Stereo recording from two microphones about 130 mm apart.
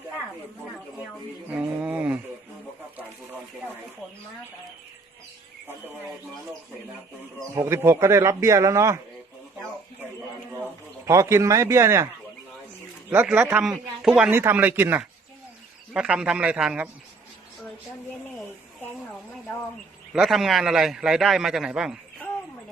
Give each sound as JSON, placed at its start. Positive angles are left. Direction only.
{"t": 1.5, "sound": "speech", "side_deg": -10}
{"t": 7.5, "sound": "speech", "side_deg": -20}
{"t": 11.0, "sound": "speech", "side_deg": -20}
{"t": 13.2, "sound": "speech", "side_deg": -15}
{"t": 20.1, "sound": "a man's voice", "side_deg": 0}